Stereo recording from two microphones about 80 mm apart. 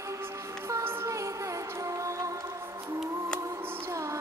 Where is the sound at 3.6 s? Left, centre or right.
Right.